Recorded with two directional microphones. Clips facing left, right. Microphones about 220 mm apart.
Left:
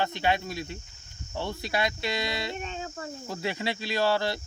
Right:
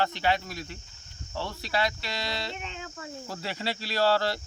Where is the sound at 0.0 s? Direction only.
20° left (ahead or behind).